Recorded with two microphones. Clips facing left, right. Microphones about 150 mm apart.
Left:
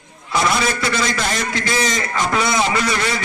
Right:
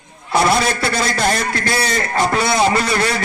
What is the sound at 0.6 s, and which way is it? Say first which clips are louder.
A man's voice: right 1 dB; 50° right (ahead or behind).